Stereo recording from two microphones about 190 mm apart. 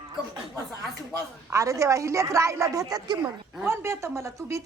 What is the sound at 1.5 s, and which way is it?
A woman's voice, 15° right (ahead or behind).